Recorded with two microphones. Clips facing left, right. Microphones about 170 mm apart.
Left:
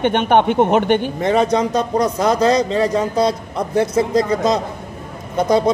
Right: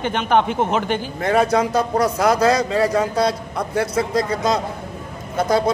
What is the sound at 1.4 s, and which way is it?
A man's voice, 5° right (ahead or behind).